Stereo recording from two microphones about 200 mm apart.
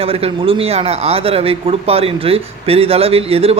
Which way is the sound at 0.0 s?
30° right (ahead or behind).